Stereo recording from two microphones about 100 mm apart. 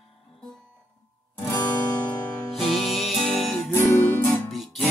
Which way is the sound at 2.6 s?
Centre (ahead or behind).